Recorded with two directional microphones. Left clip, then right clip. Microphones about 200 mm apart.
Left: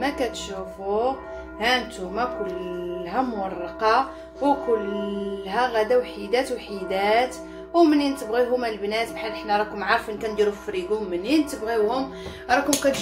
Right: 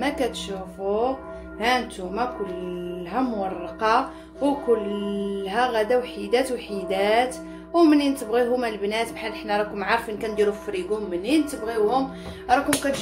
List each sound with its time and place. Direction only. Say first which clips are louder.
0.2 s a woman's voice: even; 30° right (ahead or behind)
3.8 s a woman's voice: left 1 dB; 30° right (ahead or behind); by 12.6 s 10° right (ahead or behind)
12.9 s speech: left 4 dB; centre (ahead or behind)